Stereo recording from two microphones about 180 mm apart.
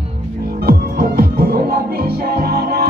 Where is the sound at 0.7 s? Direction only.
55° right (ahead or behind).